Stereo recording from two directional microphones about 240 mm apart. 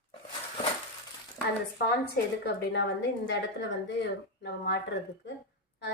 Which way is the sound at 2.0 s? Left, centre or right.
Left.